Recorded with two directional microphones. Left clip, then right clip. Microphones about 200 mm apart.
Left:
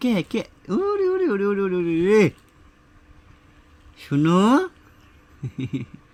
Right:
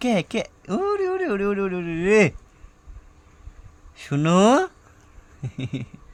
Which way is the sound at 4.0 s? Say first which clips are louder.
Right 1 dB; 15° right (ahead or behind).